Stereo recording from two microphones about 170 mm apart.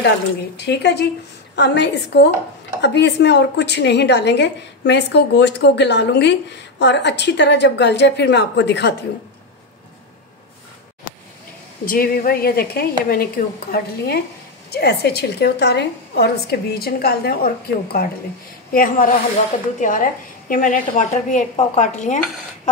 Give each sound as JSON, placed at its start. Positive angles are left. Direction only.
{"t": 0.6, "sound": "a woman's voice", "side_deg": 85}
{"t": 11.8, "sound": "a woman's voice", "side_deg": 55}
{"t": 18.7, "sound": "a woman's voice", "side_deg": 55}